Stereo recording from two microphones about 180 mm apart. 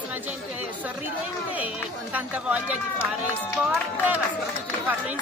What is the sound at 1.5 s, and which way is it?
Speech, 10° right (ahead or behind).